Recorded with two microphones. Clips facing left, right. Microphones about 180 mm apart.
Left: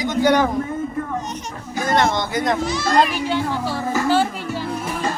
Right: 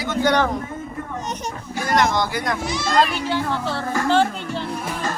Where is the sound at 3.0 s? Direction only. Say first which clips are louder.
Even; 15° left (ahead or behind).